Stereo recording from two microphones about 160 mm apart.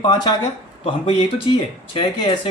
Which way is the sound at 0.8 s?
35° left (ahead or behind).